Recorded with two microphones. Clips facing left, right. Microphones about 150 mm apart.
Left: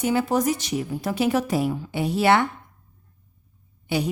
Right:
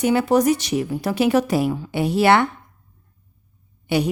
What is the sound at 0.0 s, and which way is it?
Speech, 70° right (ahead or behind).